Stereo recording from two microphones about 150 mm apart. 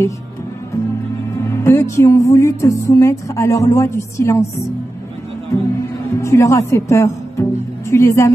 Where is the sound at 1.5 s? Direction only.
20° left (ahead or behind).